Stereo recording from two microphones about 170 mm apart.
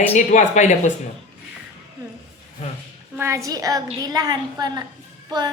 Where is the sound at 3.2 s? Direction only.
15° right (ahead or behind).